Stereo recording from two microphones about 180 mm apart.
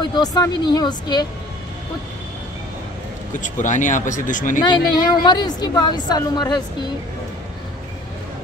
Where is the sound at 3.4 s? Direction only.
45° left (ahead or behind).